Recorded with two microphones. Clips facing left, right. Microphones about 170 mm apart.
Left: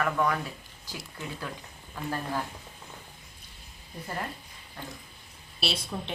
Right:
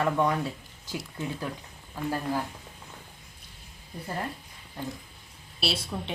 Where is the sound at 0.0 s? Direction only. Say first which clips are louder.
Right 2 dB; 25° right (ahead or behind).